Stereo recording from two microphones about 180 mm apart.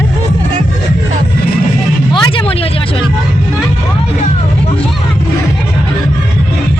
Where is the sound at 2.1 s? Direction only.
30° left (ahead or behind).